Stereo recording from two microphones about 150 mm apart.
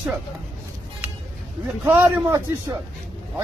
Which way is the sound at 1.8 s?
15° right (ahead or behind).